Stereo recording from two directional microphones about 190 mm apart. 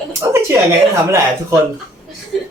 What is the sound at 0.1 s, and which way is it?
Speech, 15° right (ahead or behind).